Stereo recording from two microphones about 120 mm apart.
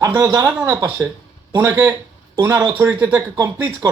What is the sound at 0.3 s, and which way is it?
Speech, 20° right (ahead or behind).